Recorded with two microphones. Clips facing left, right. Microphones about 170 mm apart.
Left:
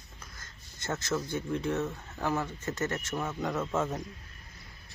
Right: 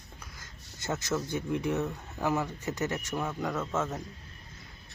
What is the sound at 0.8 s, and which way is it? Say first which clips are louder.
Speech: right 1 dB; 15° right (ahead or behind).